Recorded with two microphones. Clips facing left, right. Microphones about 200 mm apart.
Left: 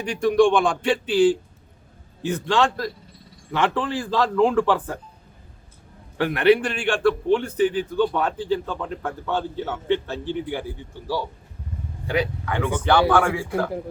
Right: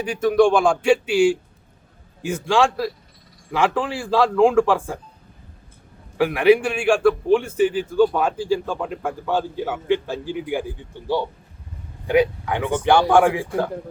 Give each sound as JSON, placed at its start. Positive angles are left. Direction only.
{"t": 0.0, "sound": "a man's voice", "side_deg": -5}
{"t": 6.1, "sound": "a man's voice", "side_deg": -5}